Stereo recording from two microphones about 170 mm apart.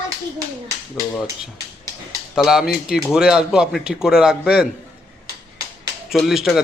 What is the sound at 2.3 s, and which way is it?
A man's voice, 5° right (ahead or behind).